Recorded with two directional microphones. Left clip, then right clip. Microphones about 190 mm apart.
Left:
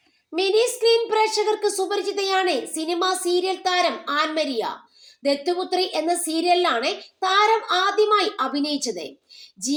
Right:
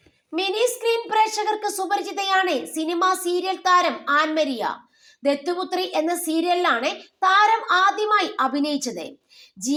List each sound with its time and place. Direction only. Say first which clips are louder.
0.3 s a woman's voice: left 2 dB; 20° right (ahead or behind)